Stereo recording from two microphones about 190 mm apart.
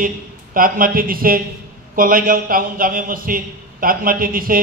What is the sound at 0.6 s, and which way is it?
A man's voice, 50° right (ahead or behind).